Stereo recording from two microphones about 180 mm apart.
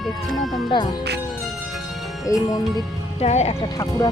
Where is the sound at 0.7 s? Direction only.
25° left (ahead or behind).